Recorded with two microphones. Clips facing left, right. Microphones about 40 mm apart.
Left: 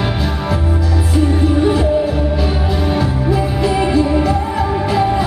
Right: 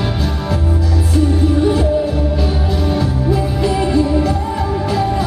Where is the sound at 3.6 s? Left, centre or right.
Centre.